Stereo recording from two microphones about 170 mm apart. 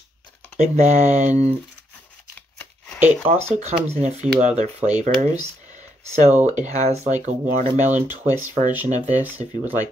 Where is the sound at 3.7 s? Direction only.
40° right (ahead or behind).